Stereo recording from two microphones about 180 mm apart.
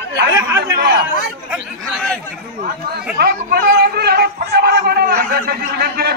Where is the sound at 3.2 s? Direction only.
60° right (ahead or behind).